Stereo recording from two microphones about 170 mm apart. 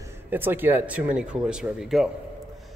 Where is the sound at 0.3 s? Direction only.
10° right (ahead or behind).